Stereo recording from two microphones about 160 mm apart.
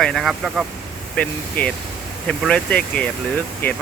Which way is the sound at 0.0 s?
Centre (ahead or behind).